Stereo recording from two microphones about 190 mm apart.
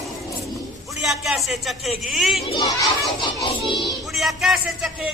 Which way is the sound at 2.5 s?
25° left (ahead or behind).